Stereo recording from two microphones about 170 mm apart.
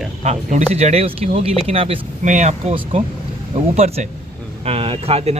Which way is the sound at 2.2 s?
45° right (ahead or behind).